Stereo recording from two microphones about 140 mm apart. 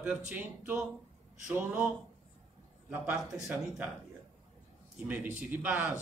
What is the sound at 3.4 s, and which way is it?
Speech, 5° right (ahead or behind).